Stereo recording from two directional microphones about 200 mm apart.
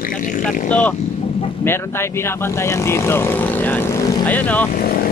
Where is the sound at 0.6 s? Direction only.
5° left (ahead or behind).